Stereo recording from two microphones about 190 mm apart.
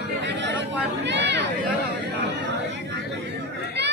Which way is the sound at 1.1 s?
65° right (ahead or behind).